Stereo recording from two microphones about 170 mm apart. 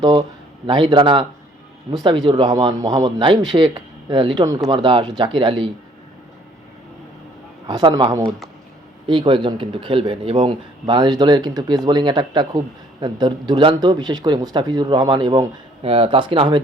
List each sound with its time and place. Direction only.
0.0 s speech: 25° right (ahead or behind)
7.7 s speech: 25° right (ahead or behind)